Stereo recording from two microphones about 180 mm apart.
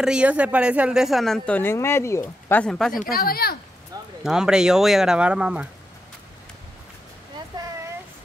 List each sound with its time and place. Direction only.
0.0 s speech: 5° right (ahead or behind)
3.1 s speech: 55° left (ahead or behind)
4.2 s speech: 5° right (ahead or behind)